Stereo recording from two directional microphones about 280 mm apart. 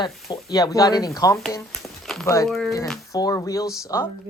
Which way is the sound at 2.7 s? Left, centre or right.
Centre.